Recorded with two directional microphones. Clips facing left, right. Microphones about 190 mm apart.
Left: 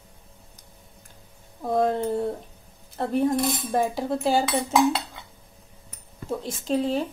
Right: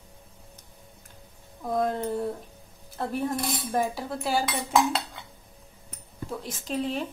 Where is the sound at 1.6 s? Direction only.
30° left (ahead or behind).